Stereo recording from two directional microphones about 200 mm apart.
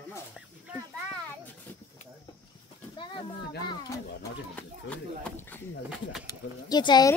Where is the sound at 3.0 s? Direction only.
25° left (ahead or behind).